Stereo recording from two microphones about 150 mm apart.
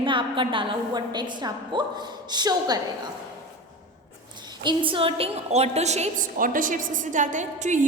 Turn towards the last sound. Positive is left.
turn(degrees=-55)  # may be behind; listen again after turning